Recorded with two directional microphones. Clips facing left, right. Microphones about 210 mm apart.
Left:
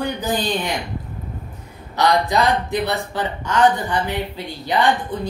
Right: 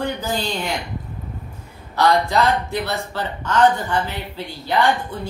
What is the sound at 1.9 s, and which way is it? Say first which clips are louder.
Music: even; 15° left (ahead or behind).